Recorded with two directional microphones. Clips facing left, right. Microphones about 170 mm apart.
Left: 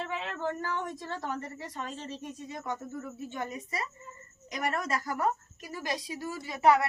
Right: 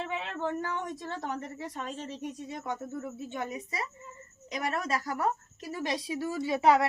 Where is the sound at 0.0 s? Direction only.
15° right (ahead or behind).